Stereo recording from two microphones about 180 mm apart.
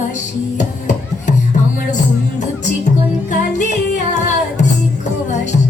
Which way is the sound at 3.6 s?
45° left (ahead or behind).